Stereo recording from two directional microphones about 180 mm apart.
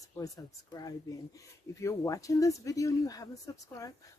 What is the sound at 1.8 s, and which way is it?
A woman's voice, 15° left (ahead or behind).